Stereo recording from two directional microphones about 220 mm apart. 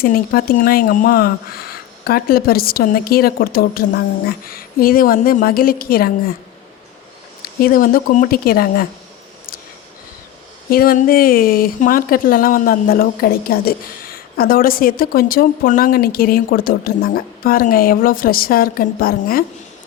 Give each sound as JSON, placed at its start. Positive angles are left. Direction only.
{"t": 0.0, "sound": "a woman's voice", "side_deg": 40}
{"t": 7.6, "sound": "speech", "side_deg": 40}
{"t": 10.7, "sound": "speech", "side_deg": 40}